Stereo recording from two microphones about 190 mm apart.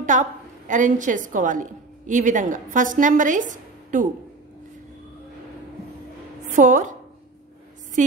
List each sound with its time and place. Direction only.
0.0 s a woman's voice: 40° right (ahead or behind)
6.5 s a woman's voice: 40° right (ahead or behind)